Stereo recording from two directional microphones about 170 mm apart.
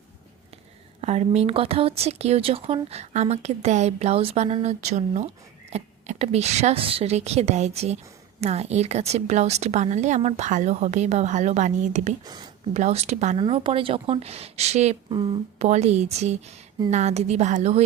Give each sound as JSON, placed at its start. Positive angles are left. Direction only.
{"t": 1.0, "sound": "speech", "side_deg": -40}
{"t": 12.2, "sound": "speech", "side_deg": -25}
{"t": 12.7, "sound": "speech", "side_deg": -40}
{"t": 15.1, "sound": "speech", "side_deg": -25}
{"t": 15.5, "sound": "speech", "side_deg": -40}